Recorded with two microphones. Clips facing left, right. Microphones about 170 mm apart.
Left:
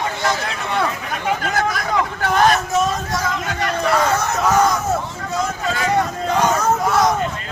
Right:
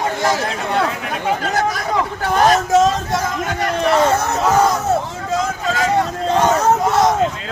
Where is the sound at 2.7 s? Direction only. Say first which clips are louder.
Right 6 dB; 90° right.